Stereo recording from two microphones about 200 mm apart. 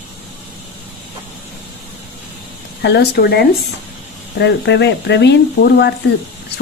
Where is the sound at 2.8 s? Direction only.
55° left (ahead or behind).